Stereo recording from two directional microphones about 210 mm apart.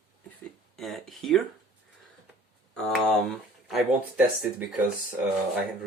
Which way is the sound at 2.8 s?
Centre (ahead or behind).